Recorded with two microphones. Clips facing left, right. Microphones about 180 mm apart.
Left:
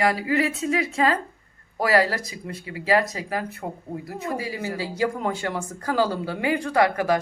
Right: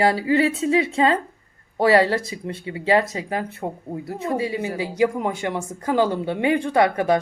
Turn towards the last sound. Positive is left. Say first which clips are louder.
# right 2 dB
turn(degrees=-25)  # may be behind; listen again after turning